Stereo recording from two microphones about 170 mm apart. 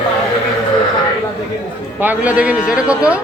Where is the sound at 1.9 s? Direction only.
10° right (ahead or behind).